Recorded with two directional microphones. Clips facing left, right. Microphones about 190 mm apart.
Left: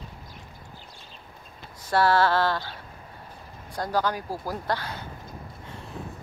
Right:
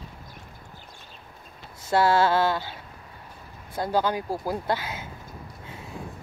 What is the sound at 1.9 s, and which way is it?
Speech, 15° right (ahead or behind).